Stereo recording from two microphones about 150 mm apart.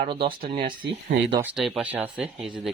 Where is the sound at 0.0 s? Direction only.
35° right (ahead or behind).